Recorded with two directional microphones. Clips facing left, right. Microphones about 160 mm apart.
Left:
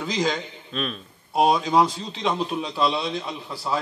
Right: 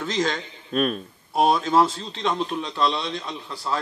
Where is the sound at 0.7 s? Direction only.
50° right (ahead or behind).